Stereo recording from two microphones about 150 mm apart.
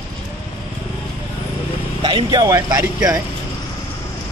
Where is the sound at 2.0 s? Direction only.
30° right (ahead or behind).